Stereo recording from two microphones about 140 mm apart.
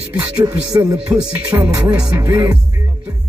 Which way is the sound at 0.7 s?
25° right (ahead or behind).